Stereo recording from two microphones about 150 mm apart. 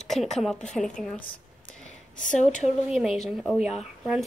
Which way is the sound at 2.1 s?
55° left (ahead or behind).